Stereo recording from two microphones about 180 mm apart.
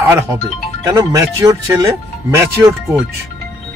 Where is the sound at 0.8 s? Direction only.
15° right (ahead or behind).